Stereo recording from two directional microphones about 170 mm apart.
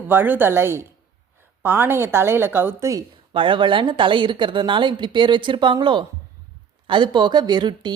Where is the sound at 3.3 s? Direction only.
30° right (ahead or behind).